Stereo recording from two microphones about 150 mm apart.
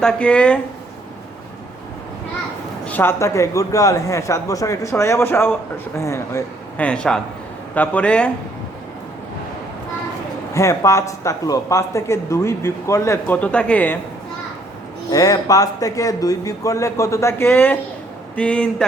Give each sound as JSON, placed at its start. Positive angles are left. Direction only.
{"t": 0.0, "sound": "speech", "side_deg": 5}
{"t": 2.8, "sound": "speech", "side_deg": 10}
{"t": 10.5, "sound": "speech", "side_deg": 20}
{"t": 15.1, "sound": "speech", "side_deg": 25}